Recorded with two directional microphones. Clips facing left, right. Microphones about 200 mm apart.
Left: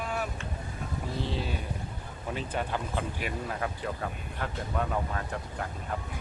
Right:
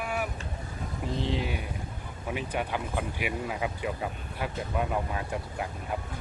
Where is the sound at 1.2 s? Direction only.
15° right (ahead or behind).